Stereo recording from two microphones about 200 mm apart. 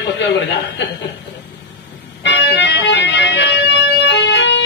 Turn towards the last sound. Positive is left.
turn(degrees=60)  # may be behind; listen again after turning